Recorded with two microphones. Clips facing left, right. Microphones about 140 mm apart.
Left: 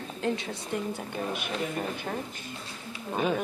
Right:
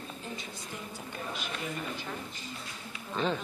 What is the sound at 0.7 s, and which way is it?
Speech, 60° left (ahead or behind).